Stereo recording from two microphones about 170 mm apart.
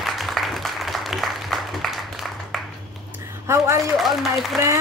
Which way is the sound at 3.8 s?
Centre (ahead or behind).